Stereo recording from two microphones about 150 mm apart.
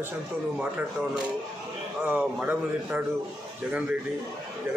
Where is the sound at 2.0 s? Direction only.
10° right (ahead or behind).